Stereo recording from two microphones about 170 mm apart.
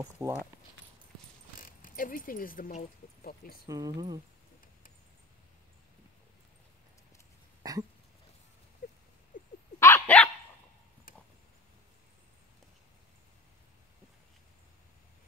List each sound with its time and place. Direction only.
0.2 s speech: 15° right (ahead or behind)
1.6 s speech: 55° left (ahead or behind)
3.6 s speech: 20° right (ahead or behind)
7.6 s throat clearing: 20° right (ahead or behind)
8.8 s patter: 55° left (ahead or behind)
9.3 s dog: 55° left (ahead or behind)
9.8 s dog: 15° left (ahead or behind)